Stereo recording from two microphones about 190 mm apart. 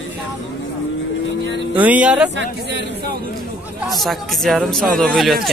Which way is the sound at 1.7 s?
10° right (ahead or behind).